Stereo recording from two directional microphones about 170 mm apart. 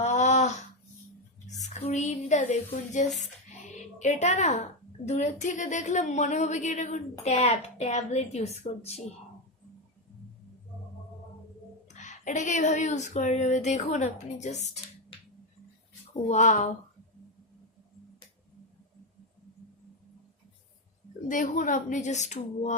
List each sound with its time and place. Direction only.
0.0 s a sound: 40° left (ahead or behind)
3.9 s a woman's voice: 45° left (ahead or behind)
11.9 s a woman's voice: 45° left (ahead or behind)
16.3 s a woman's voice: 45° left (ahead or behind)
21.2 s a woman's voice: 50° left (ahead or behind)